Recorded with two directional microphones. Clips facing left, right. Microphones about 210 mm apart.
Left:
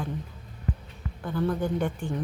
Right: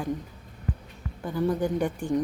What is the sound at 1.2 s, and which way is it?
Speech, 15° right (ahead or behind).